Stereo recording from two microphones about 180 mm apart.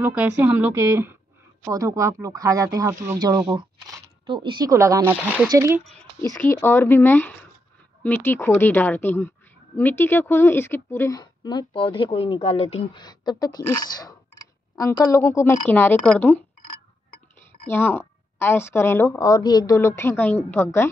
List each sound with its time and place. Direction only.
0.0 s speech: 10° right (ahead or behind)
6.2 s a woman's voice: 15° left (ahead or behind)
17.6 s a woman's voice: 10° left (ahead or behind)